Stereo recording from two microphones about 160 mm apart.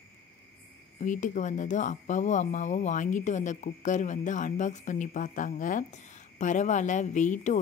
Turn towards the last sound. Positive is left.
turn(degrees=50)  # may be behind; listen again after turning